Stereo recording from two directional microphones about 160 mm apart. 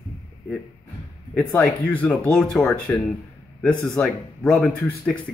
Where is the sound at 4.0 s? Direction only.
5° left (ahead or behind).